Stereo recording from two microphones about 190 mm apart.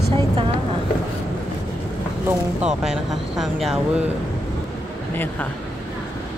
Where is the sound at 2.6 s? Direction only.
Centre (ahead or behind).